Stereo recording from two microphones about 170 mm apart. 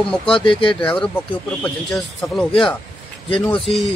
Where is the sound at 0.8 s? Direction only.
5° left (ahead or behind).